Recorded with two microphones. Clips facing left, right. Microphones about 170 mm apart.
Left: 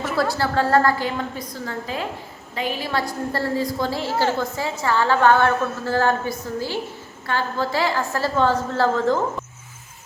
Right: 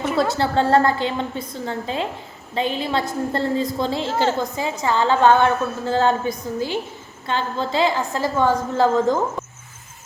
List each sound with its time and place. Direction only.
0.0 s a woman's voice: 20° right (ahead or behind)